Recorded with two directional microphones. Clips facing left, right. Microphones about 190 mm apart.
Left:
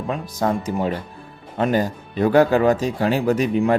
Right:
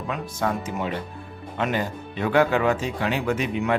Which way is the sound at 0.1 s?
35° left (ahead or behind).